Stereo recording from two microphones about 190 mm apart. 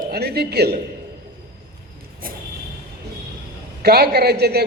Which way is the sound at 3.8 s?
55° right (ahead or behind).